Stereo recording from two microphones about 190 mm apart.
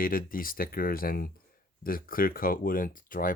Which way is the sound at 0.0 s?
50° left (ahead or behind).